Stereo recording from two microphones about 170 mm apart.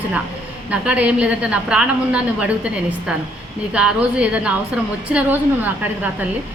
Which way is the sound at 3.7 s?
5° right (ahead or behind).